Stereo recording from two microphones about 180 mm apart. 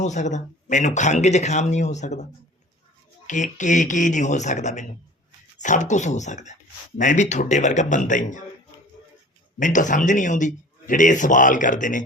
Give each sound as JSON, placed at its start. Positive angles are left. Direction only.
{"t": 0.0, "sound": "speech", "side_deg": 40}
{"t": 3.2, "sound": "speech", "side_deg": 45}
{"t": 9.6, "sound": "speech", "side_deg": 45}